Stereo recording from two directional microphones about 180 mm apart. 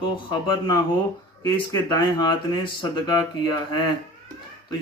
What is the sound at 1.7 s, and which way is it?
Speech, 20° left (ahead or behind).